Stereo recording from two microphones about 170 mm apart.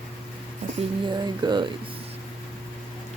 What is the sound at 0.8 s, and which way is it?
Speech, 30° right (ahead or behind).